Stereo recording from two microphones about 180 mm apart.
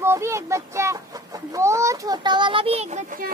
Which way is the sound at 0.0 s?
15° right (ahead or behind).